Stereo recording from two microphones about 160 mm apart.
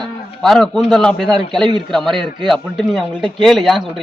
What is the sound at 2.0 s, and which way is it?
Speech, 30° right (ahead or behind).